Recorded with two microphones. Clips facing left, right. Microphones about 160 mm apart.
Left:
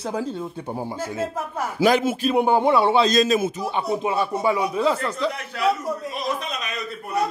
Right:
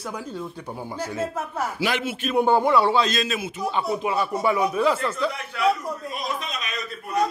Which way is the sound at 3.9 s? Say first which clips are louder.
Left 1 dB; 25° left (ahead or behind).